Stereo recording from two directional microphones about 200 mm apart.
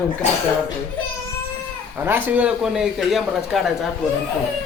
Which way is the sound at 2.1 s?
10° right (ahead or behind).